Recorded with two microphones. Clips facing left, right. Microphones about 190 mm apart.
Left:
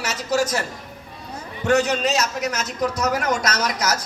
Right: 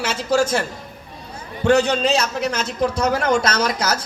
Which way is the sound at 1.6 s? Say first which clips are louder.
Right 3 dB; 30° right (ahead or behind).